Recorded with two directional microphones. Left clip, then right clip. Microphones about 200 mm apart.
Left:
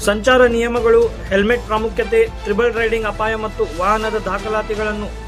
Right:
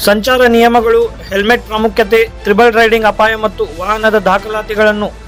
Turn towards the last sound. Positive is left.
turn(degrees=-40)  # may be behind; listen again after turning